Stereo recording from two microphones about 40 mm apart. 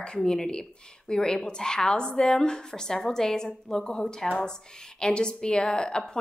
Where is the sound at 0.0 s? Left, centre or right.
Left.